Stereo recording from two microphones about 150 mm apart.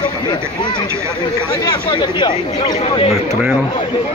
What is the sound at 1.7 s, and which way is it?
Speech, 30° left (ahead or behind).